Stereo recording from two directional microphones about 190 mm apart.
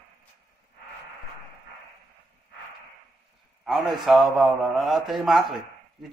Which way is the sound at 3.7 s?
Centre (ahead or behind).